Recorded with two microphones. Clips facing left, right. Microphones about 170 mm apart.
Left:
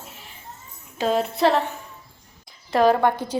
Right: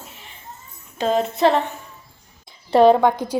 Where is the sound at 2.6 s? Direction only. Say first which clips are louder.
Right 5 dB; 30° right (ahead or behind).